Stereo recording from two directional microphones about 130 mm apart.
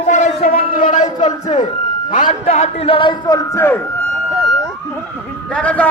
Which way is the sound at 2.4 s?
50° left (ahead or behind).